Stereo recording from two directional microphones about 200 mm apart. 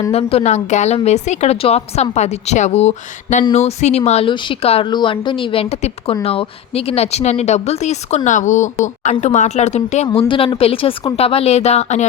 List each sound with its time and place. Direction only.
0.1 s speech: 30° left (ahead or behind)